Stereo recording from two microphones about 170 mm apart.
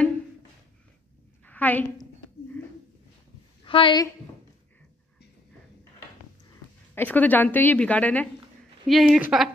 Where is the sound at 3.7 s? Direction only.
30° left (ahead or behind).